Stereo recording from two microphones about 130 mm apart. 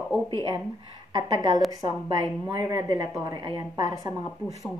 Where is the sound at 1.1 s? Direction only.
30° right (ahead or behind).